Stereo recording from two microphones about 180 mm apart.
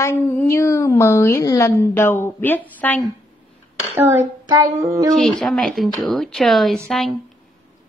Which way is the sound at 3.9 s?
15° right (ahead or behind).